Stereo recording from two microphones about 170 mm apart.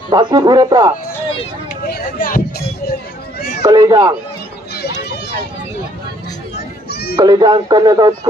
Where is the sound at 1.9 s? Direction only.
60° left (ahead or behind).